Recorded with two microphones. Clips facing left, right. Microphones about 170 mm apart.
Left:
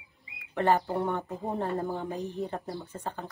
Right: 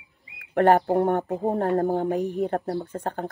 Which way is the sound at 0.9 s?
45° right (ahead or behind).